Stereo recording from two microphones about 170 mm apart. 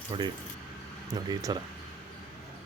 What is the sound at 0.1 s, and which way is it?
Speech, 30° right (ahead or behind).